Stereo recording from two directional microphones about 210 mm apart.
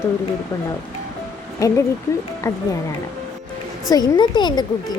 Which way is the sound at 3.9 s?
20° left (ahead or behind).